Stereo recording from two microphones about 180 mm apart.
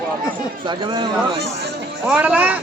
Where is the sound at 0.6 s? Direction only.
25° right (ahead or behind).